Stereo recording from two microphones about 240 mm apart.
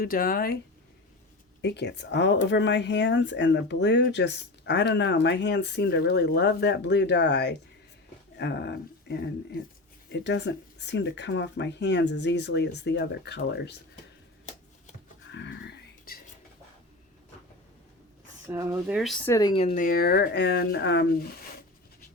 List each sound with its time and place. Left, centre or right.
0.0 s speech: left
1.6 s speech: left
15.3 s a sound: left
18.4 s speech: centre
18.9 s speech: centre; by 21.4 s left